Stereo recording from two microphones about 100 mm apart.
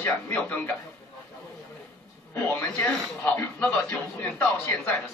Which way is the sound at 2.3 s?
15° left (ahead or behind).